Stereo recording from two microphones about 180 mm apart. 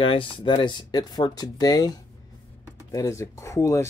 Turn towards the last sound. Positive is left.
turn(degrees=15)  # may be behind; listen again after turning